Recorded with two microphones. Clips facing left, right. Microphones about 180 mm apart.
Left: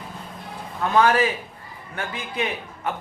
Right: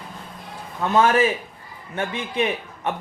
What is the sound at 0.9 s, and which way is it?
A man's voice, 20° right (ahead or behind).